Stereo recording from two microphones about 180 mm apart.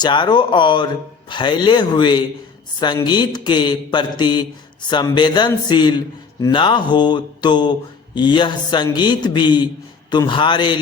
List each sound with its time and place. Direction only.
0.0 s mantra: 25° left (ahead or behind)